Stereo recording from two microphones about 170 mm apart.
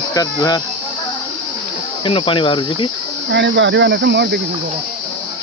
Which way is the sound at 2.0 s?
30° left (ahead or behind).